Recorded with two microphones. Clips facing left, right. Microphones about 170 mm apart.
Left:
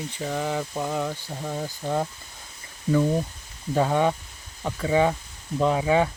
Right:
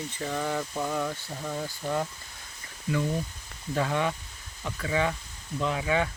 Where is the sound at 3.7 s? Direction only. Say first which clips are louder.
Left 6 dB; 30° left (ahead or behind).